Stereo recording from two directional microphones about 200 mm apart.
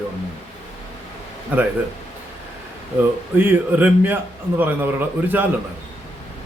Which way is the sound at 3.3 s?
10° right (ahead or behind).